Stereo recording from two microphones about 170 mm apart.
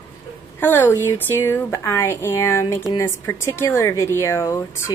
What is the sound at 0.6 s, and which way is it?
Speech, 15° left (ahead or behind).